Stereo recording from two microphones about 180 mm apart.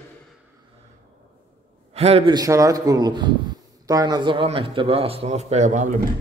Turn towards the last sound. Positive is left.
turn(degrees=-40)  # may be behind; listen again after turning